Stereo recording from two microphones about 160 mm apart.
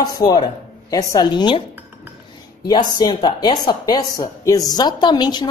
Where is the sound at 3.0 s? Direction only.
25° left (ahead or behind).